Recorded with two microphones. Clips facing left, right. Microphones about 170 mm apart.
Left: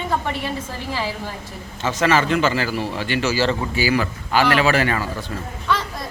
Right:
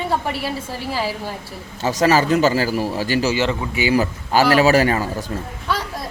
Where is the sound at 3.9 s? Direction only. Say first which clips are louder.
Right 6 dB; 40° right (ahead or behind).